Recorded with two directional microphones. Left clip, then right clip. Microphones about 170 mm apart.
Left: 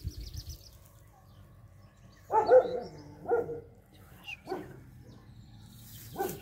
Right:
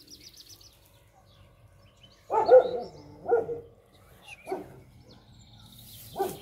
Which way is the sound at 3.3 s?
5° left (ahead or behind).